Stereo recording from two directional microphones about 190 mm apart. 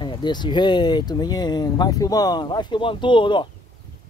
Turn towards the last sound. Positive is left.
turn(degrees=25)  # may be behind; listen again after turning